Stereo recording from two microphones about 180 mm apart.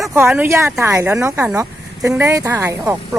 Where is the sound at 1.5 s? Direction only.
15° right (ahead or behind).